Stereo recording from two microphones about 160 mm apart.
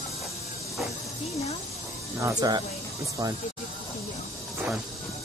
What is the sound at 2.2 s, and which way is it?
Speech, 20° right (ahead or behind).